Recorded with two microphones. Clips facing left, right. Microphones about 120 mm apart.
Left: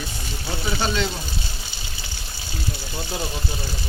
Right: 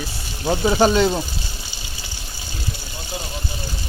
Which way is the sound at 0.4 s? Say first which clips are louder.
Right 10 dB; 45° right (ahead or behind).